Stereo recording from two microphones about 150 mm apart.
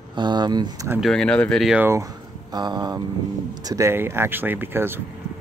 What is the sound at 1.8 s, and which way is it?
Speech, 20° right (ahead or behind).